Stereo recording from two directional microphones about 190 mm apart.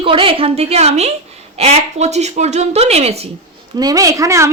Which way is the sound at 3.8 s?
20° right (ahead or behind).